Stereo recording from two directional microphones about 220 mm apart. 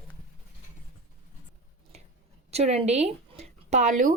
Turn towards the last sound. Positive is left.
turn(degrees=-35)  # may be behind; listen again after turning